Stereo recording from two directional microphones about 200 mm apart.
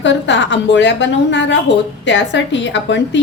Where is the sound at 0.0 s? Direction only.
65° left (ahead or behind).